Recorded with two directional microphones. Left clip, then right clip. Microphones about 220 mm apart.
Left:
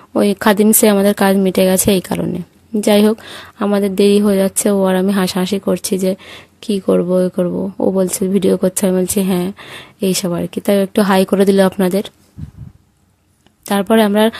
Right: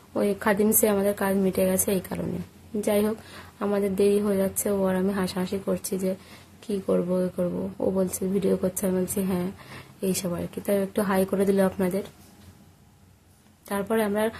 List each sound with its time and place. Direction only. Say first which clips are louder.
0.1 s speech: left 11 dB; 40° left (ahead or behind)
13.7 s speech: left 13 dB; 40° left (ahead or behind)